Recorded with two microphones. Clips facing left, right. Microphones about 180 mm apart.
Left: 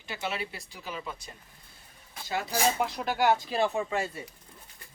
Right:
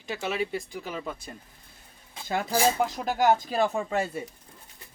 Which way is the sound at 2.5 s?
45° right (ahead or behind).